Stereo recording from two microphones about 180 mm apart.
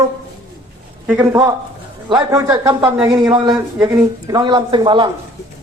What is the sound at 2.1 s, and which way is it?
Speech, 20° right (ahead or behind).